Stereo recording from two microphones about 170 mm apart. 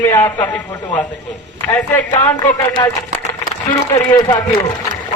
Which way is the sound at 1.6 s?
15° left (ahead or behind).